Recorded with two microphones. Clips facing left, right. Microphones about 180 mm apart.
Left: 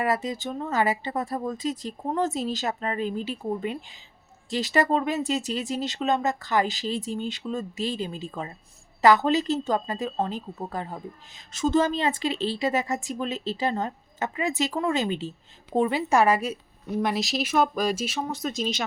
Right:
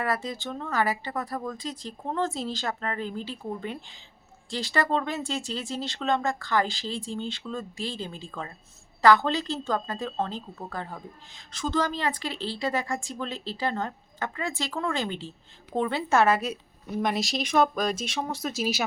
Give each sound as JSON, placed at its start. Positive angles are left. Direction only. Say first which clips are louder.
{"t": 0.0, "sound": "a woman's voice", "louder": "left 3 dB", "side_deg": 20}